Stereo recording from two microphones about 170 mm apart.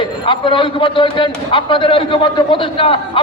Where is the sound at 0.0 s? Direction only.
30° left (ahead or behind).